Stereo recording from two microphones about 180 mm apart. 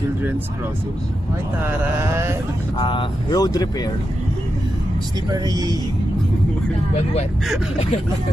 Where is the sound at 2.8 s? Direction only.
25° left (ahead or behind).